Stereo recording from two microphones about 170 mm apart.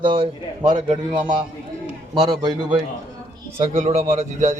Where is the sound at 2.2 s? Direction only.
25° right (ahead or behind).